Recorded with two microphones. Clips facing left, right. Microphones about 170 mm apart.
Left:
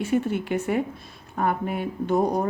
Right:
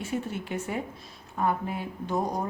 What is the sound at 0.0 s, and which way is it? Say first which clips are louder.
Speech: left 8 dB; 65° left (ahead or behind).